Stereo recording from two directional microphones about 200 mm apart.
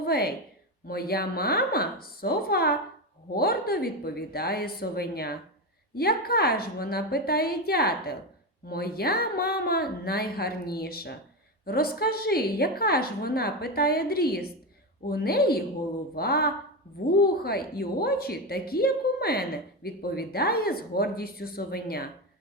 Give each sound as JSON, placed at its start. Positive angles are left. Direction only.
{"t": 0.0, "sound": "a woman's voice", "side_deg": 50}